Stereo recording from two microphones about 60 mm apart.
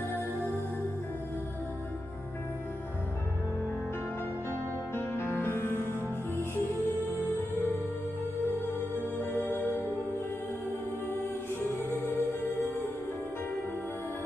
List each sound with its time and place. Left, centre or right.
4.9 s music: left
7.1 s music: left
9.2 s music: left
11.9 s music: left